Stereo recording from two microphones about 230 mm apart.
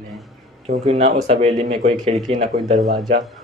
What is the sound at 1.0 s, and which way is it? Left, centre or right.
Speech, right.